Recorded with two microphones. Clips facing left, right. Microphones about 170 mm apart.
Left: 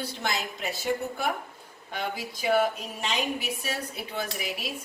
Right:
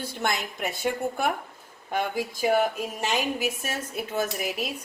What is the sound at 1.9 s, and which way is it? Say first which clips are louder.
Speech: right 5 dB; 50° right (ahead or behind).